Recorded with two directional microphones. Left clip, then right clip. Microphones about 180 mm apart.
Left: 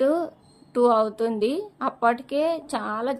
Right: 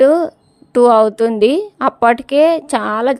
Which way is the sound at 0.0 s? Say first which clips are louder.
Right 12 dB; 45° right (ahead or behind).